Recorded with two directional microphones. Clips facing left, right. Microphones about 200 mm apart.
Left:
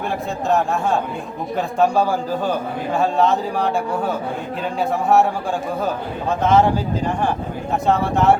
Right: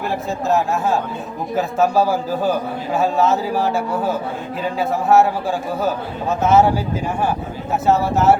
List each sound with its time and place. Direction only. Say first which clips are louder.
0.4 s a man's voice: even; 5° right (ahead or behind)